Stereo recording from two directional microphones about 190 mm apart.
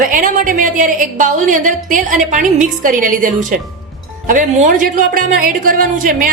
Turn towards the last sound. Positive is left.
turn(degrees=-45)  # may be behind; listen again after turning